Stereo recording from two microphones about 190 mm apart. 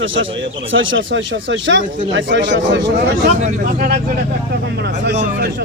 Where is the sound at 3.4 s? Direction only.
40° right (ahead or behind).